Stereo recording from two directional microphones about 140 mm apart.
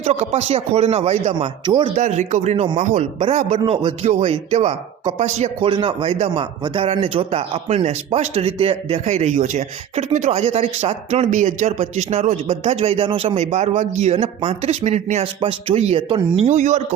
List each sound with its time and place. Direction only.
0.0 s speech: 50° right (ahead or behind)
1.6 s speech: 35° right (ahead or behind)
2.0 s speech: 55° right (ahead or behind)
5.5 s speech: 40° right (ahead or behind)
16.6 s speech: 60° right (ahead or behind)